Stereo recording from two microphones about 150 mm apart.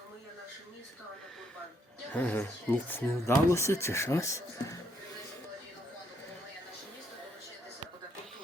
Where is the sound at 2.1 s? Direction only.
10° left (ahead or behind).